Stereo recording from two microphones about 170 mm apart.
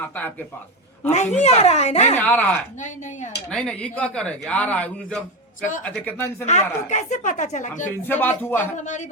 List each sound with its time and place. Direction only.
1.1 s a woman's voice: 40° left (ahead or behind)
2.1 s speech: 10° left (ahead or behind)
6.4 s speech: 45° left (ahead or behind)
8.0 s speech: 10° left (ahead or behind)